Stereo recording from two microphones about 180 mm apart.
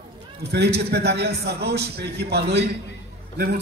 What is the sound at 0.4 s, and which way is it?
A man's voice, 65° right (ahead or behind).